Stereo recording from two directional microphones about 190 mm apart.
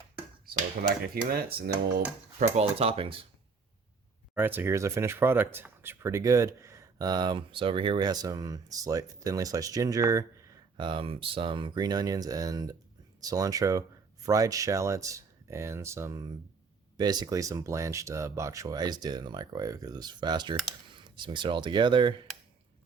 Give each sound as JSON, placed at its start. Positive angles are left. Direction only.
{"t": 0.4, "sound": "speech", "side_deg": -50}
{"t": 2.6, "sound": "speech", "side_deg": -30}
{"t": 4.4, "sound": "speech", "side_deg": -10}